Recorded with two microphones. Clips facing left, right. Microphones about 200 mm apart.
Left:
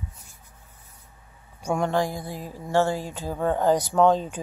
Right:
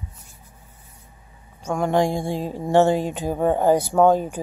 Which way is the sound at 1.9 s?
20° right (ahead or behind).